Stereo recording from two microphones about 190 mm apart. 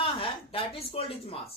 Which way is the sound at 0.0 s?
30° left (ahead or behind).